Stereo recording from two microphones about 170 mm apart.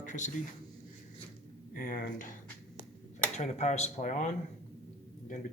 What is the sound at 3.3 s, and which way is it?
Speech, 40° left (ahead or behind).